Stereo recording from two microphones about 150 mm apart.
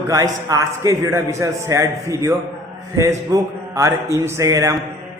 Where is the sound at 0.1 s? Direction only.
25° right (ahead or behind).